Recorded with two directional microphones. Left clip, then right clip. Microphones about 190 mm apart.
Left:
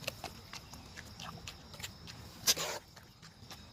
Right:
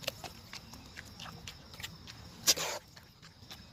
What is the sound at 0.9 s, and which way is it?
Horse, 5° left (ahead or behind).